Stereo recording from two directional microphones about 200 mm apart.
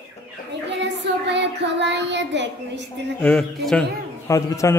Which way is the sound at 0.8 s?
60° right (ahead or behind).